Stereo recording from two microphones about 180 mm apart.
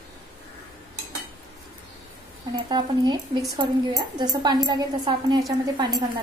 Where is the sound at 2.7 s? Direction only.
25° right (ahead or behind).